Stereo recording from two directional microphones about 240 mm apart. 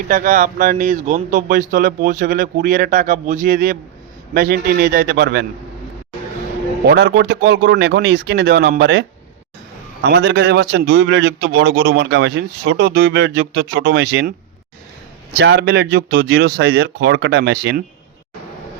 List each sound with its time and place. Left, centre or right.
0.1 s speech: right
6.8 s a man's voice: right
15.4 s a man's voice: right